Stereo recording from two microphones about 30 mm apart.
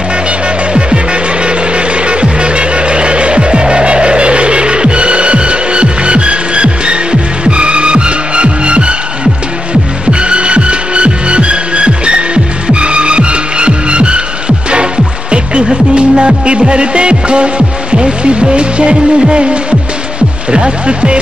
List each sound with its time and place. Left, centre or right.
0.7 s music: right
15.9 s music: right
20.5 s speech: right